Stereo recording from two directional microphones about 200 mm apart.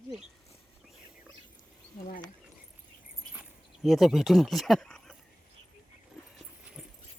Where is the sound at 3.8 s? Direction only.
Centre (ahead or behind).